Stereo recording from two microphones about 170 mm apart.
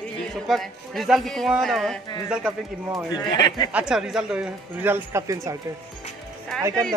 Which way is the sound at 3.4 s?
25° left (ahead or behind).